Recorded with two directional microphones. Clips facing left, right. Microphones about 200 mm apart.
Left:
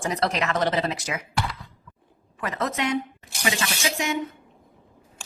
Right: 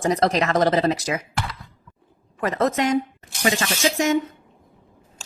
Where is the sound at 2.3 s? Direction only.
40° right (ahead or behind).